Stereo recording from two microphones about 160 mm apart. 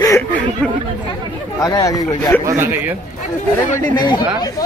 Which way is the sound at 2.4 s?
15° right (ahead or behind).